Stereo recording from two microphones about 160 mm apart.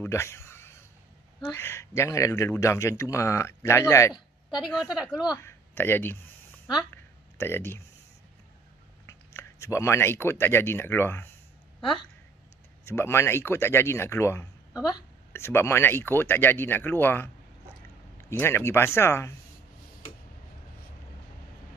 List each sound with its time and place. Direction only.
0.0 s a sound: 15° left (ahead or behind)
1.4 s speech: 15° left (ahead or behind)
4.6 s a woman's voice: centre (ahead or behind)
5.2 s speech: 20° left (ahead or behind)
6.9 s a sound: 15° left (ahead or behind)
9.0 s speech: 15° left (ahead or behind)
12.8 s speech: 15° left (ahead or behind)
18.4 s speech: 15° left (ahead or behind)